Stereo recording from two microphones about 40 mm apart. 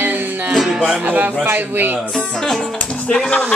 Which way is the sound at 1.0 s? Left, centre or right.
Right.